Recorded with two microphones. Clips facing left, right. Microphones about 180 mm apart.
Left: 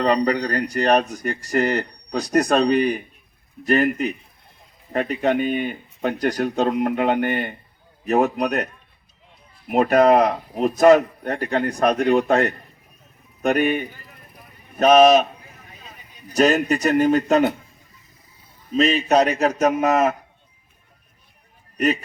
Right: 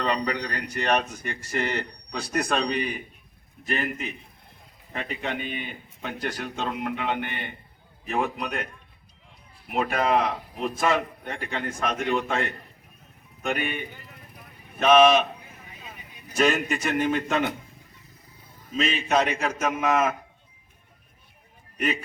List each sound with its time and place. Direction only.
0.0 s a man's voice: 40° left (ahead or behind)
9.6 s a man's voice: 45° left (ahead or behind)
16.3 s speech: 40° left (ahead or behind)
18.7 s speech: 40° left (ahead or behind)